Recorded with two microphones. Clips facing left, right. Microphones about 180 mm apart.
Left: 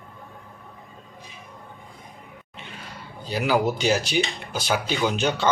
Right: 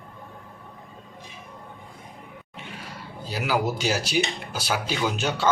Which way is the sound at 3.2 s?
5° right (ahead or behind).